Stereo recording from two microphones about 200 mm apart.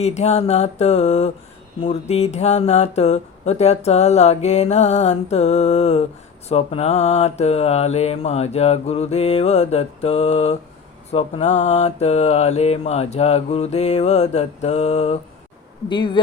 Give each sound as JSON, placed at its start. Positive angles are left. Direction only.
{"t": 0.0, "sound": "speech", "side_deg": 35}